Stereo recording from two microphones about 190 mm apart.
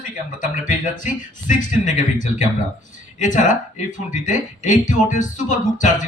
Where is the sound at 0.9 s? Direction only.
40° left (ahead or behind).